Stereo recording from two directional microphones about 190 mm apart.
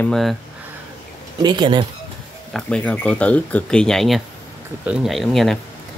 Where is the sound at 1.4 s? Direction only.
25° right (ahead or behind).